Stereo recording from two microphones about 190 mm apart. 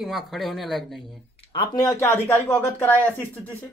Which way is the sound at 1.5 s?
25° left (ahead or behind).